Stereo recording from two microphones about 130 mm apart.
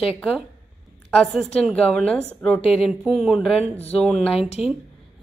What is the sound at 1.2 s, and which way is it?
A woman's voice, centre (ahead or behind).